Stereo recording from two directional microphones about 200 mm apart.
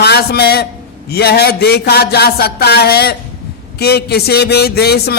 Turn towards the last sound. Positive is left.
turn(degrees=50)  # may be behind; listen again after turning